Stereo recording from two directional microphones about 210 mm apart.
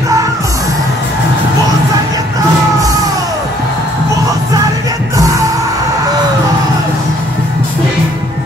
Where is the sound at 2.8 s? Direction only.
15° right (ahead or behind).